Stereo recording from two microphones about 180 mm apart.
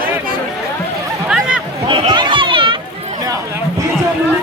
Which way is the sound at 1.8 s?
25° right (ahead or behind).